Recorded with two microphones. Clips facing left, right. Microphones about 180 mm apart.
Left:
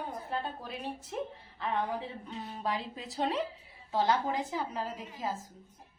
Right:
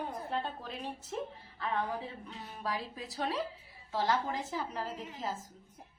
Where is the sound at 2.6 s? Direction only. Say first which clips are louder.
Left 2 dB; 25° left (ahead or behind).